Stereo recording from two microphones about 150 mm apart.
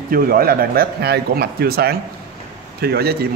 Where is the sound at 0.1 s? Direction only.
80° right.